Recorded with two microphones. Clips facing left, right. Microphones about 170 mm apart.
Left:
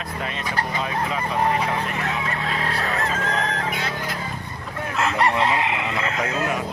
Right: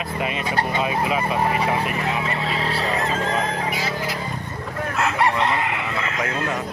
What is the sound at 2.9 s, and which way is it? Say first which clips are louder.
Chicken: right 2 dB; 20° right (ahead or behind).